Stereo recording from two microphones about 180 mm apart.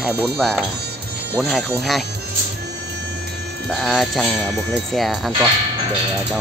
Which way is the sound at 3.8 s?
Centre (ahead or behind).